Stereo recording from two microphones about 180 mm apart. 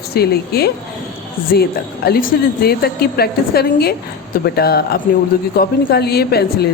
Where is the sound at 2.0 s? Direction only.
60° left (ahead or behind).